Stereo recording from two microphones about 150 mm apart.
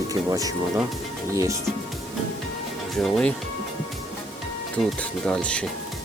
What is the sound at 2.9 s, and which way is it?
Speech, centre (ahead or behind).